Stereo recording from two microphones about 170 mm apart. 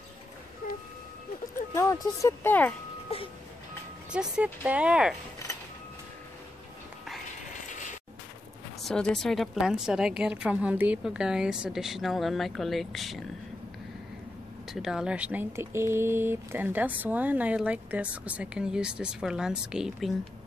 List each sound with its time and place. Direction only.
1.7 s speech: 15° left (ahead or behind)
3.1 s music: 35° left (ahead or behind)
4.1 s speech: 5° right (ahead or behind)
8.8 s a woman's voice: 5° left (ahead or behind)
14.7 s speech: centre (ahead or behind)